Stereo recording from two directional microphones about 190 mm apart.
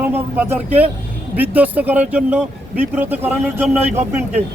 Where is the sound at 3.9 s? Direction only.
40° right (ahead or behind).